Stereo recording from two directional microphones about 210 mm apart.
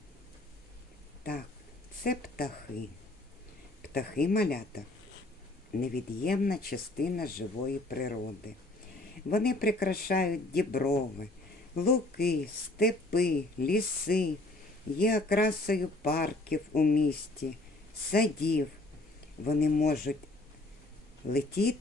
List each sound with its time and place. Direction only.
2.0 s speech: 45° left (ahead or behind)
3.9 s speech: 45° left (ahead or behind)
5.8 s speech: 45° left (ahead or behind)
9.3 s speech: 45° left (ahead or behind)
21.3 s speech: 50° left (ahead or behind)